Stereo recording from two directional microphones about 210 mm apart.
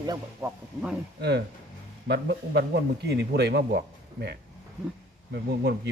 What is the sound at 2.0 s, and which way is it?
A man's voice, 55° right (ahead or behind).